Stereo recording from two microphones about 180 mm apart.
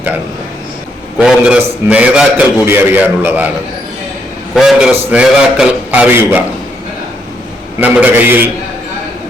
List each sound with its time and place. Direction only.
1.2 s a man's voice: 5° right (ahead or behind)
4.5 s a man's voice: centre (ahead or behind)
7.8 s a man's voice: 10° right (ahead or behind)